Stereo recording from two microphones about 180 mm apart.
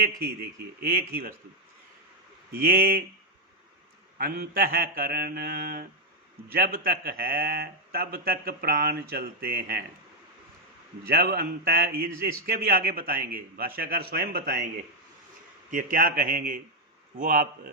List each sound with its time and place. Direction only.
0.2 s a man's voice: 60° right (ahead or behind)
2.6 s a man's voice: 55° right (ahead or behind)
4.2 s a man's voice: 55° right (ahead or behind)
11.1 s a man's voice: 60° right (ahead or behind)
15.7 s speech: 50° right (ahead or behind)